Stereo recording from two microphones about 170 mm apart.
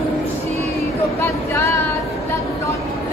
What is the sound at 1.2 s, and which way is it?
Speech, 15° left (ahead or behind).